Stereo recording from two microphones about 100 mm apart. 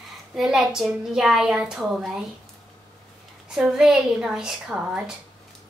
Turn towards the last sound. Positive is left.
turn(degrees=-10)  # may be behind; listen again after turning